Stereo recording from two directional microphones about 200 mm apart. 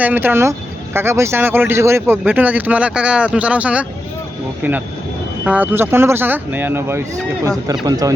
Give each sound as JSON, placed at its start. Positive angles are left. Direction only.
{"t": 0.0, "sound": "speech", "side_deg": -10}
{"t": 5.5, "sound": "speech", "side_deg": -10}